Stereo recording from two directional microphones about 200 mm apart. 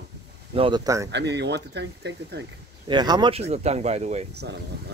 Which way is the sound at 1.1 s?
60° right (ahead or behind).